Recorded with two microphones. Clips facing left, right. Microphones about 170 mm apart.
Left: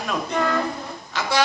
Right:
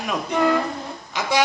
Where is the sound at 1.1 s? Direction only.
15° right (ahead or behind).